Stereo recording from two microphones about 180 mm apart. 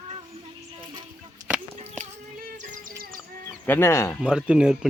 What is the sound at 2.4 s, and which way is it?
Music, 55° right (ahead or behind).